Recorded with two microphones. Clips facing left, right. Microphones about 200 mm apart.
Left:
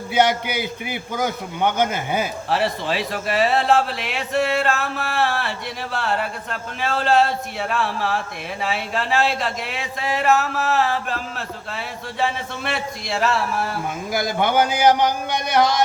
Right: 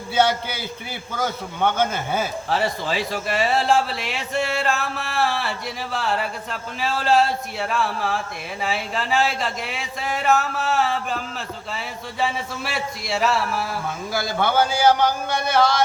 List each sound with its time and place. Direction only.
0.1 s a man's voice: 15° left (ahead or behind)
2.5 s a man's voice: centre (ahead or behind)
14.1 s a man's voice: 15° left (ahead or behind)